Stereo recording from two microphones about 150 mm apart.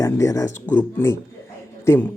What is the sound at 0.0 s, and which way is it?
Speech, 20° left (ahead or behind).